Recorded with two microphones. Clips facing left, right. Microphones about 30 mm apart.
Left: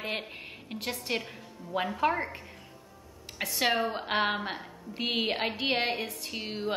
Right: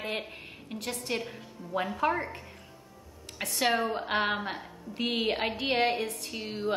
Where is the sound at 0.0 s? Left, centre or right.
Centre.